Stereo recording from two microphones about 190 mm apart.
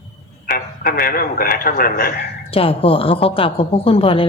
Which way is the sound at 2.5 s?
30° left (ahead or behind).